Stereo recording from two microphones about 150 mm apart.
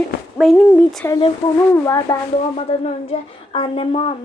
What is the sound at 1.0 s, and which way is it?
A child's voice, 20° left (ahead or behind).